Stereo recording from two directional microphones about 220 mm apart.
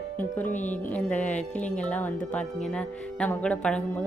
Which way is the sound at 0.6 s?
5° left (ahead or behind).